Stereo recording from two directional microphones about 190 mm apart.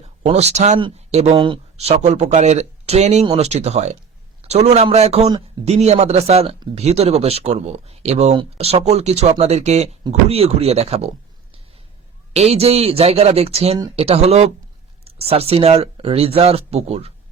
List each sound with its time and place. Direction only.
0.2 s speech: 35° right (ahead or behind)
12.3 s speech: 35° right (ahead or behind)